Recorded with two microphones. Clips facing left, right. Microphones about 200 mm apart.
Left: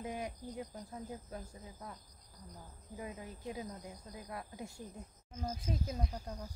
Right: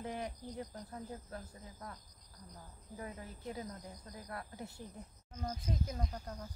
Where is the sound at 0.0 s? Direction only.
15° left (ahead or behind).